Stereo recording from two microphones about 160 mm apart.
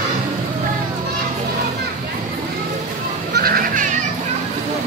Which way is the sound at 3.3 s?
65° right (ahead or behind).